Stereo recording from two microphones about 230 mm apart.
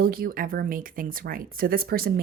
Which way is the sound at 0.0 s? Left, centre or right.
Right.